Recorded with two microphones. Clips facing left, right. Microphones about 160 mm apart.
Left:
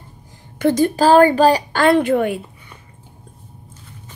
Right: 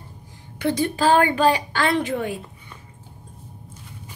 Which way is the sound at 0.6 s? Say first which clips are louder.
Left 7 dB; 45° left (ahead or behind).